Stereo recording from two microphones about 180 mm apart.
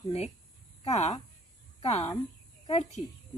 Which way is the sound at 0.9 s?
40° left (ahead or behind).